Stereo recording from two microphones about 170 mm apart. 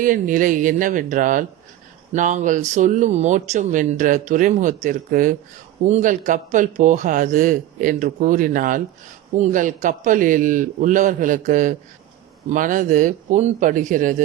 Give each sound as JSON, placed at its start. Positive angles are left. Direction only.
{"t": 0.0, "sound": "a man's voice", "side_deg": -50}